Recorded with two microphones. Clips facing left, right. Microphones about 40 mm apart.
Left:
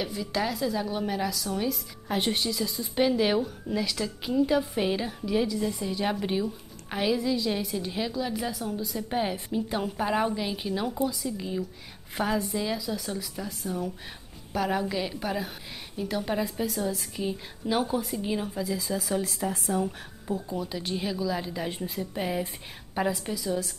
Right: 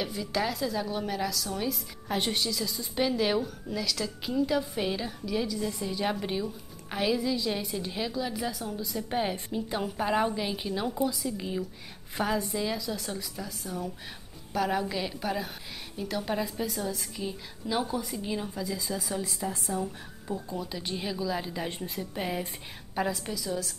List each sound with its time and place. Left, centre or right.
0.0 s a woman's voice: centre
5.8 s a woman's voice: centre
17.2 s a woman's voice: centre
19.4 s a woman's voice: centre
20.2 s a woman's voice: centre